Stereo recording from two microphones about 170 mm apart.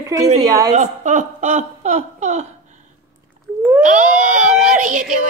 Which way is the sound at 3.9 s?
50° right (ahead or behind).